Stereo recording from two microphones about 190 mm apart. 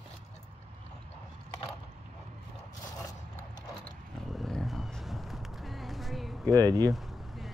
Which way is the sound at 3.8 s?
Centre (ahead or behind).